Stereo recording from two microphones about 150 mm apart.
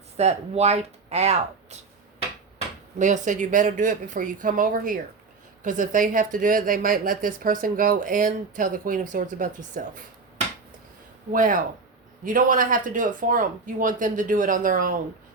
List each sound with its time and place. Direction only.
0.2 s speech: 45° right (ahead or behind)
3.0 s speech: 55° right (ahead or behind)
11.3 s speech: 65° right (ahead or behind)